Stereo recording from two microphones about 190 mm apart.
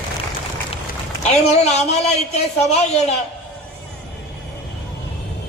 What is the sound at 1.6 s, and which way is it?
Speech, 35° left (ahead or behind).